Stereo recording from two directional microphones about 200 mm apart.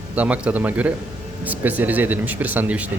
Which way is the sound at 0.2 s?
5° right (ahead or behind).